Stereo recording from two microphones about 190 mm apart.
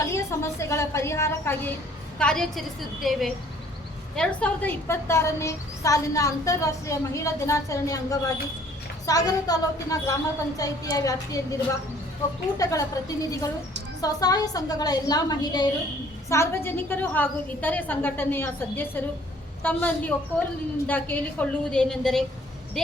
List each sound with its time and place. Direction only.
0.0 s a woman's voice: 15° left (ahead or behind)
12.5 s a woman's voice: 20° left (ahead or behind); by 22.2 s 5° left (ahead or behind)